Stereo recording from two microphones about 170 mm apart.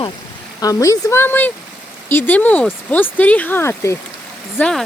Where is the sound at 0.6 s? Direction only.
20° left (ahead or behind).